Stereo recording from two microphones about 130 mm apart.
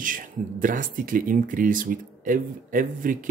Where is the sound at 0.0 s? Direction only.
90° right.